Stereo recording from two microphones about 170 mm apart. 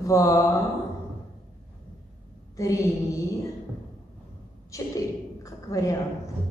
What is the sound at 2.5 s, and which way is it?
Speech, 20° left (ahead or behind).